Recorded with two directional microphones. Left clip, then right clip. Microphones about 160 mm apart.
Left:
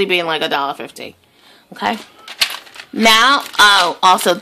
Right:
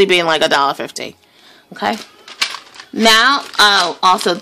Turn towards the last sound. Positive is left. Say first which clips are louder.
# left 1 dB
turn(degrees=-5)  # may be behind; listen again after turning